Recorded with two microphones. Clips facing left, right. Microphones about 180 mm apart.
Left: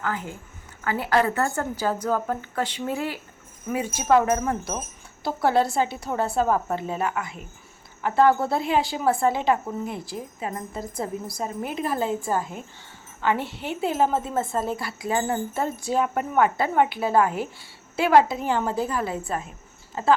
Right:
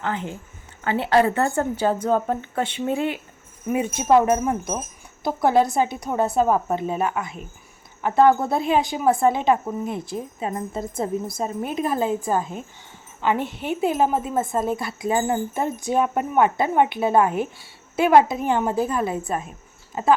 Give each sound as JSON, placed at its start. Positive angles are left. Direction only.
{"t": 0.0, "sound": "speech", "side_deg": -25}